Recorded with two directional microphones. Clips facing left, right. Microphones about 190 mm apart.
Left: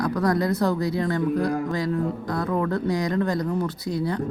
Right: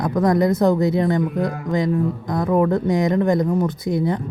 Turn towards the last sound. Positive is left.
turn(degrees=-20)  # may be behind; listen again after turning